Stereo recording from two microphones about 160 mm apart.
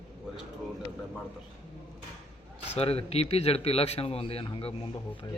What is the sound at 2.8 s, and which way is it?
Speech, 40° left (ahead or behind).